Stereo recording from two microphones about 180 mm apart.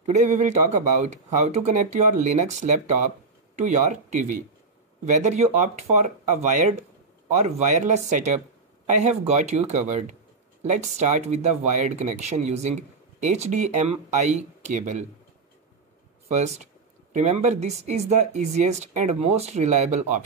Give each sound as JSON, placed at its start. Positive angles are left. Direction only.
{"t": 0.0, "sound": "speech", "side_deg": -40}
{"t": 16.3, "sound": "speech", "side_deg": -40}